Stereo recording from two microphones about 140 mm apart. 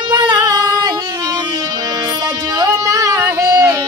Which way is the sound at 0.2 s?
30° right (ahead or behind).